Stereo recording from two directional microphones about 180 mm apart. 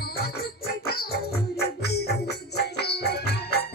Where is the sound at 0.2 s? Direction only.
60° left (ahead or behind).